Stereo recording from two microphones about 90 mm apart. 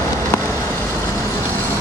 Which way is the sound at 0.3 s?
30° left (ahead or behind).